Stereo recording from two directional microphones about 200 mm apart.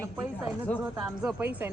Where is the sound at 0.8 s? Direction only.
5° right (ahead or behind).